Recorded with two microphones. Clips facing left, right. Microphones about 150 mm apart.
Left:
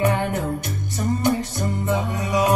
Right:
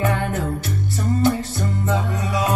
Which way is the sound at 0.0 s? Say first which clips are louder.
Left 1 dB; 15° left (ahead or behind).